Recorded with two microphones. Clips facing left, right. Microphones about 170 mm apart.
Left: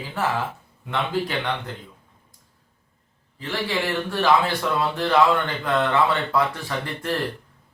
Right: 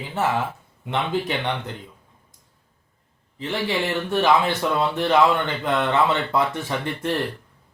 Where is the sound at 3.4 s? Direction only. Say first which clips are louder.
Right 2 dB; 20° right (ahead or behind).